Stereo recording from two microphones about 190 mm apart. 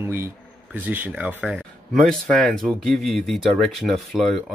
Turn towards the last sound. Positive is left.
turn(degrees=0)  # may be behind; listen again after turning